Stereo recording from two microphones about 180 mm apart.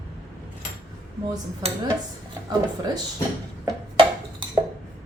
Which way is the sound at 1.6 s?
35° right (ahead or behind).